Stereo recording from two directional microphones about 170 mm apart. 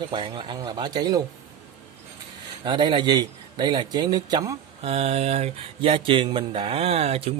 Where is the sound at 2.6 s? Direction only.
30° right (ahead or behind).